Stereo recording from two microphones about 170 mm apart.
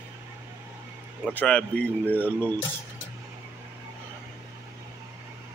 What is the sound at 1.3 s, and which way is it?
Speech, 5° left (ahead or behind).